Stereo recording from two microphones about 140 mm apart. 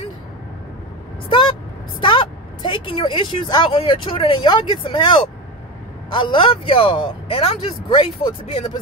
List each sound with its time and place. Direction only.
1.3 s a woman's voice: 35° left (ahead or behind)